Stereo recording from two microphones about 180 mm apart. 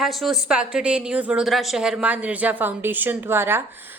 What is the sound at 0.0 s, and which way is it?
Speech, centre (ahead or behind).